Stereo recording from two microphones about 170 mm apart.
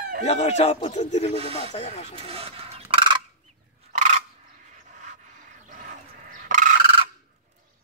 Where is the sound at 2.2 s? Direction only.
35° right (ahead or behind).